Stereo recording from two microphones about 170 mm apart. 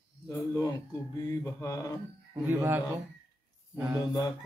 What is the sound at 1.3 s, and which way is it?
Mantra, 15° left (ahead or behind).